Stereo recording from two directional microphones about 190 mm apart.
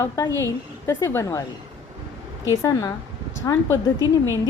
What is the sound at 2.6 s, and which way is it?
Speech, 20° left (ahead or behind).